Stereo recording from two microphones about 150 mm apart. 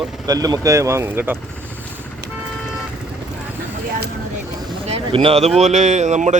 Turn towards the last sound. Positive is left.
turn(degrees=-50)  # may be behind; listen again after turning